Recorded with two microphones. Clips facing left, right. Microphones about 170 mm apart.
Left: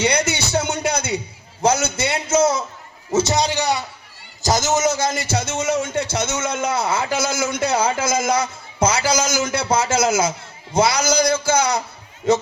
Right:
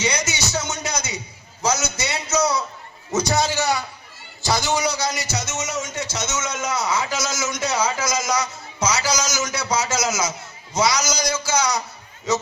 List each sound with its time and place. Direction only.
0.0 s music: 60° left (ahead or behind)
1.6 s a sound: 55° left (ahead or behind)
3.2 s a man's voice: 20° left (ahead or behind)
4.4 s a man's voice: 45° left (ahead or behind)